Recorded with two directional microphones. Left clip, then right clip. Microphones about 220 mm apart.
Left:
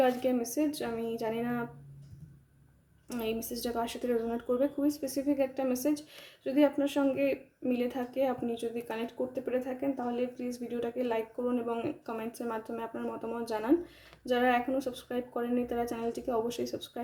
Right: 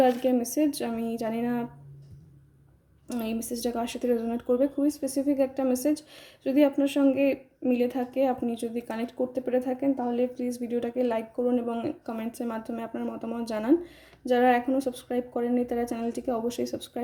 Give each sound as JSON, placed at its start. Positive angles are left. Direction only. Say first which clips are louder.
{"t": 0.0, "sound": "speech", "louder": "right 5 dB", "side_deg": -25}
{"t": 3.1, "sound": "speech", "louder": "right 2 dB", "side_deg": -25}